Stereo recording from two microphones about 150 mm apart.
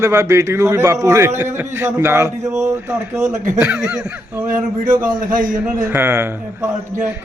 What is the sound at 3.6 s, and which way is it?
Speech, 5° right (ahead or behind).